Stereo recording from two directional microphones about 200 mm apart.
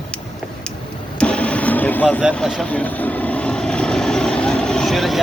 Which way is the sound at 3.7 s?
5° left (ahead or behind).